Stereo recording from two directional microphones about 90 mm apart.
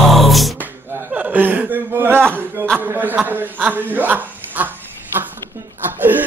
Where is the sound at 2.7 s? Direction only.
20° right (ahead or behind).